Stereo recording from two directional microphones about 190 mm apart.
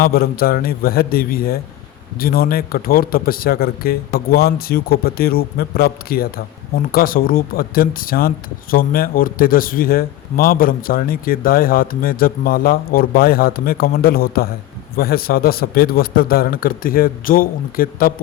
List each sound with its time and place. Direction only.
0.0 s a man's voice: 50° left (ahead or behind)